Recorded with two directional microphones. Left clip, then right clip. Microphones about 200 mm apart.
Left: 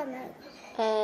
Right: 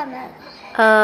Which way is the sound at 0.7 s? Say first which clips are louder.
Right 15 dB; 5° right (ahead or behind).